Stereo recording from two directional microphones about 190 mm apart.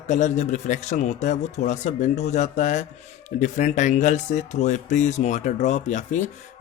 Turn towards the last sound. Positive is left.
turn(degrees=40)  # may be behind; listen again after turning